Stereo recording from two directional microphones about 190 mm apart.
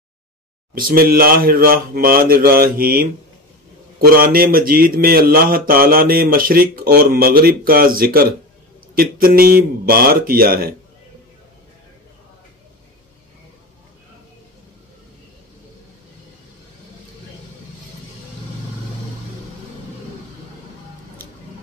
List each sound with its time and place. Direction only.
0.7 s speech: 50° right (ahead or behind)